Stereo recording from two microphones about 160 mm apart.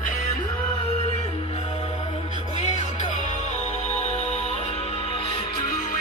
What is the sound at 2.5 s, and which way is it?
Music, 45° left (ahead or behind).